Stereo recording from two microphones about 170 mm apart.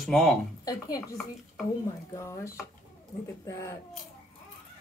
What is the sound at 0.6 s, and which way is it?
Speech, 20° left (ahead or behind).